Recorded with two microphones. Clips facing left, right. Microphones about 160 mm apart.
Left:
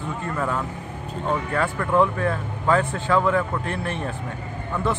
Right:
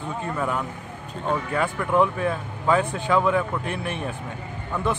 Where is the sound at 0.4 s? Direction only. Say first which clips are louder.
Left 2 dB; 10° right (ahead or behind).